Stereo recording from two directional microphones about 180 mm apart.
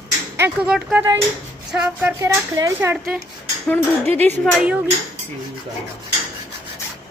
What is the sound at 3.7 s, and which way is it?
Speech, 10° left (ahead or behind).